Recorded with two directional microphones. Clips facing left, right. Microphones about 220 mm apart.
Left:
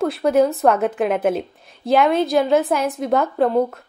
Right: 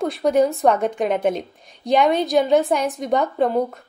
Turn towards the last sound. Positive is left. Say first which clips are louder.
# left 1 dB
turn(degrees=0)  # may be behind; listen again after turning